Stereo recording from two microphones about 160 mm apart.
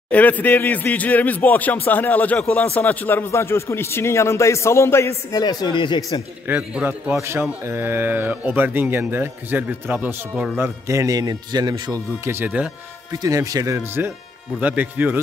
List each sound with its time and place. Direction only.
0.1 s a man's voice: 10° left (ahead or behind)
6.4 s a man's voice: 10° right (ahead or behind)
10.6 s speech: 20° right (ahead or behind)
13.1 s a man's voice: 20° right (ahead or behind)